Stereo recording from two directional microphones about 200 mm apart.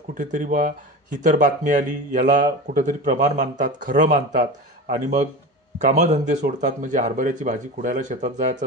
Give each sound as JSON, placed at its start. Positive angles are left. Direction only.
{"t": 0.2, "sound": "speech", "side_deg": -40}